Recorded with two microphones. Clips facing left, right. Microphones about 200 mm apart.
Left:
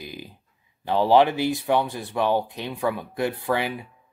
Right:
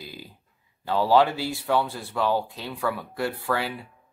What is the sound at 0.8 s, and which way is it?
Speech, 20° left (ahead or behind).